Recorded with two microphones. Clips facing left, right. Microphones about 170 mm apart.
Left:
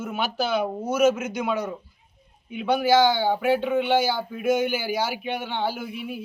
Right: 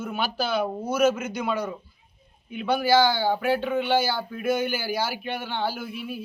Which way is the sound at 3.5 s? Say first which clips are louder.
Left 3 dB; 15° left (ahead or behind).